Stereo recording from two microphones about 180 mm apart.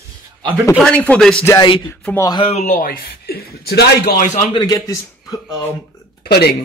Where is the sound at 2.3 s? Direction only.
30° left (ahead or behind); by 4.4 s 50° left (ahead or behind).